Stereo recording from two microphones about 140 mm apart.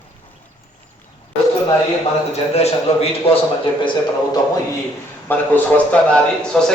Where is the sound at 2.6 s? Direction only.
45° left (ahead or behind).